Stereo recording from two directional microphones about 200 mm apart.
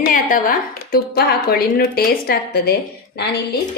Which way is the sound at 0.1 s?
45° left (ahead or behind).